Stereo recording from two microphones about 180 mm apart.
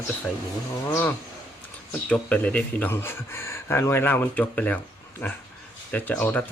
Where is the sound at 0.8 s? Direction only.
10° left (ahead or behind).